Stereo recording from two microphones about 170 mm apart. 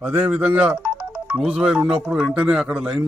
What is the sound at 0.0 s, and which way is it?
Speech, 10° right (ahead or behind).